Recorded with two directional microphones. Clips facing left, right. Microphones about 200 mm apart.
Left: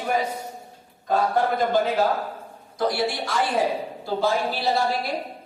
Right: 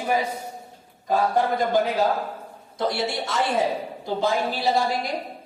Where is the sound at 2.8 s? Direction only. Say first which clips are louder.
Left 1 dB; 25° right (ahead or behind).